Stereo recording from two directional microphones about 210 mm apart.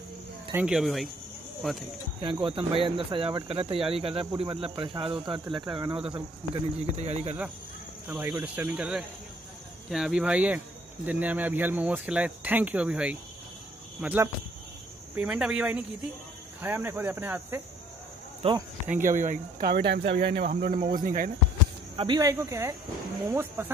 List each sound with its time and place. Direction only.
0.5 s speech: 5° right (ahead or behind)
2.1 s speech: 25° right (ahead or behind)
8.1 s speech: 15° right (ahead or behind)
18.4 s speech: 25° right (ahead or behind)
19.0 s speech: 40° right (ahead or behind)
21.9 s speech: 20° right (ahead or behind)